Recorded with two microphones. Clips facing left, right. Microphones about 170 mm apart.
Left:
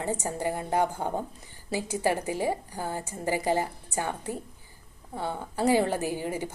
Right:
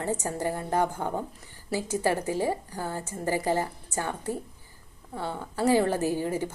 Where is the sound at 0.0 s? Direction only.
15° left (ahead or behind).